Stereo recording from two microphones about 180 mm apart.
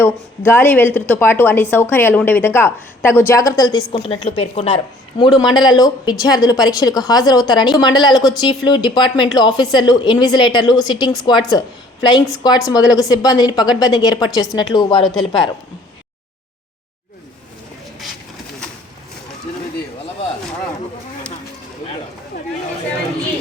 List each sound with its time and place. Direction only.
0.0 s a woman's voice: 15° left (ahead or behind)
15.0 s speech: centre (ahead or behind)